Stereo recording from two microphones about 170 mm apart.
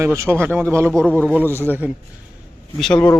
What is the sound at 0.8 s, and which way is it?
Speech, 10° left (ahead or behind).